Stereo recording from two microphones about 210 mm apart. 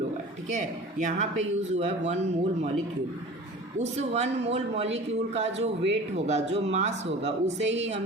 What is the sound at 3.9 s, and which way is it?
A man's voice, 30° right (ahead or behind).